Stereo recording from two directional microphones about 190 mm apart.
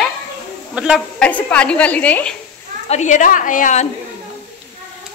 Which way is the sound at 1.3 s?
5° left (ahead or behind).